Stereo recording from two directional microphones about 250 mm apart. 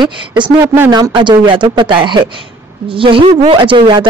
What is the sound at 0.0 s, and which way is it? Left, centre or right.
Speech, centre.